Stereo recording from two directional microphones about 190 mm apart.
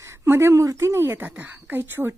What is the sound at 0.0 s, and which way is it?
A woman's voice, 15° right (ahead or behind).